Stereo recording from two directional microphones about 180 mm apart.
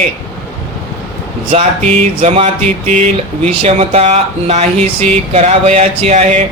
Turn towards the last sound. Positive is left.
turn(degrees=-40)  # may be behind; listen again after turning